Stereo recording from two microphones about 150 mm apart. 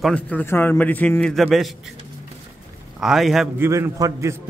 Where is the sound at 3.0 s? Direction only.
Centre (ahead or behind).